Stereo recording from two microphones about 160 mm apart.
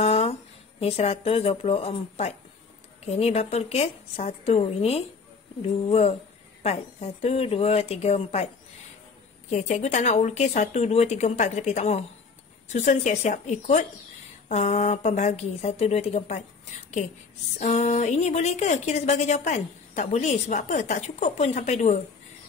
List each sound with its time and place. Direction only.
0.0 s speech: 40° left (ahead or behind)
9.5 s a woman's voice: 50° left (ahead or behind)
17.6 s a woman's voice: 45° left (ahead or behind)